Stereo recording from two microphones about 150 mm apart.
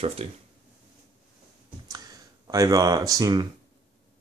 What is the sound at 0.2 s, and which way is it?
Speech, 40° right (ahead or behind).